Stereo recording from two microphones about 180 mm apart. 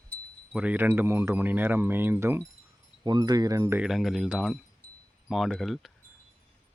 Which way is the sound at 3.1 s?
25° right (ahead or behind).